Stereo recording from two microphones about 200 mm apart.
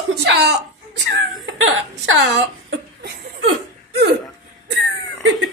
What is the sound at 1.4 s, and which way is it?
Speech, 80° right.